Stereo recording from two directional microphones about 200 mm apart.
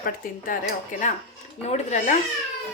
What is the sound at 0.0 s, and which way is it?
Speech, 45° left (ahead or behind).